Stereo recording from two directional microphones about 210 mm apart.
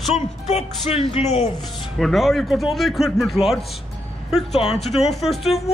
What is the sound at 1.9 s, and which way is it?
Speech, centre (ahead or behind).